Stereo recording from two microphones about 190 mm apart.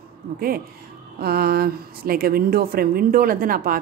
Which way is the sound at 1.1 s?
55° right (ahead or behind).